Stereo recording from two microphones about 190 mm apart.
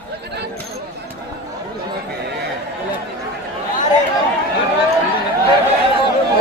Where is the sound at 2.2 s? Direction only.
60° right (ahead or behind).